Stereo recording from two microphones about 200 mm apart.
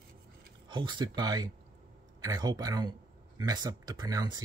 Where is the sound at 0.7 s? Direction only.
25° right (ahead or behind).